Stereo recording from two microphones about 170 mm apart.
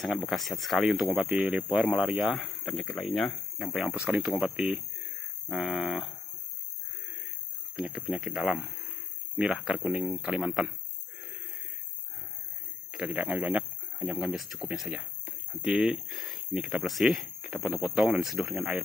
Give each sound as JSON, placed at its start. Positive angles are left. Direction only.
{"t": 0.0, "sound": "speech", "side_deg": 0}
{"t": 7.7, "sound": "speech", "side_deg": -5}
{"t": 12.9, "sound": "speech", "side_deg": -5}